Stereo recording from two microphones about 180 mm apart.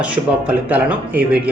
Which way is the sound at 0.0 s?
10° right (ahead or behind).